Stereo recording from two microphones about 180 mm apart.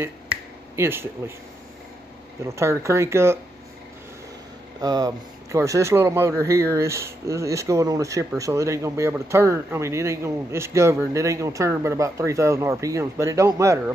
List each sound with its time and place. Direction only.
0.7 s speech: 15° right (ahead or behind)
2.4 s speech: 15° right (ahead or behind)
4.8 s speech: 20° right (ahead or behind)